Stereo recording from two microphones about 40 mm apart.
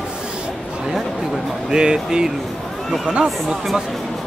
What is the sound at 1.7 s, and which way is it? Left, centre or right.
Speech, centre.